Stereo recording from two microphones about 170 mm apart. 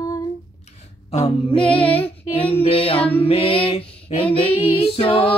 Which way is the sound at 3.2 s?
30° left (ahead or behind).